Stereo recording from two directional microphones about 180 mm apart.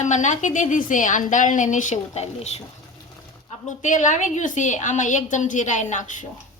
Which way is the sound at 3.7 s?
45° left (ahead or behind).